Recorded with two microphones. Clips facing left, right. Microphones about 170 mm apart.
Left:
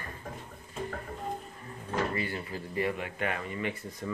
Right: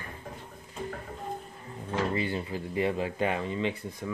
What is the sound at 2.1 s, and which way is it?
Speech, 20° right (ahead or behind).